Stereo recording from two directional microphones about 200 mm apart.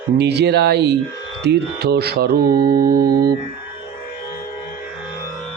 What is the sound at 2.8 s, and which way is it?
Music, 20° right (ahead or behind).